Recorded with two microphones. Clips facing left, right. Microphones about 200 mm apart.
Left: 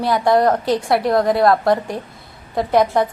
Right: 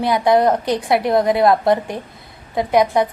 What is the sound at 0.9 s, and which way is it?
Speech, 20° right (ahead or behind).